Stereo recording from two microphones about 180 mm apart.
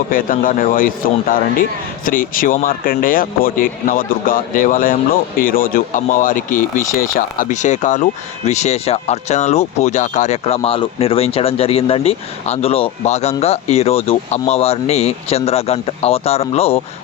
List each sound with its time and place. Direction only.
0.1 s a man's voice: 50° left (ahead or behind); by 16.8 s 35° left (ahead or behind)